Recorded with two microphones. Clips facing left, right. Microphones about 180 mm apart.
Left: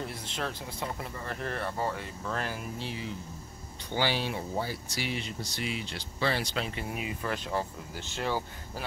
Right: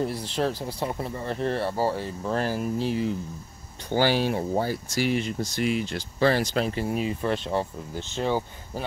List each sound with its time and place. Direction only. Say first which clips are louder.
0.0 s speech: right 9 dB; 35° right (ahead or behind)